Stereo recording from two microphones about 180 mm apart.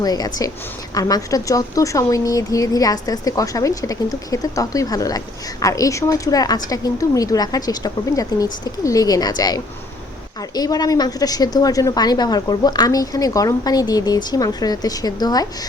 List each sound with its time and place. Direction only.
0.0 s a woman's voice: 20° left (ahead or behind)